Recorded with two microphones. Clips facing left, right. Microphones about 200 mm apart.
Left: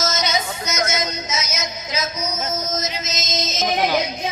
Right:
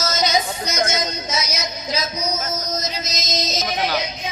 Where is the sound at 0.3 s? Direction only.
30° right (ahead or behind).